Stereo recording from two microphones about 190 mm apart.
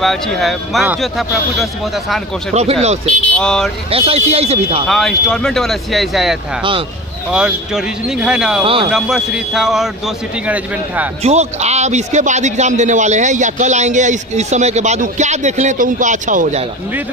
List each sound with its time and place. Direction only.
0.0 s speech: centre (ahead or behind)
2.5 s a man's voice: 35° right (ahead or behind)
3.3 s speech: 5° left (ahead or behind)
3.9 s a man's voice: 30° right (ahead or behind)
4.8 s speech: centre (ahead or behind)
11.2 s a man's voice: 35° right (ahead or behind)